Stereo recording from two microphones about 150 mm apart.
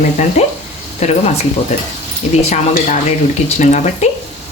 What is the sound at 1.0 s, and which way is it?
Speech, 50° left (ahead or behind).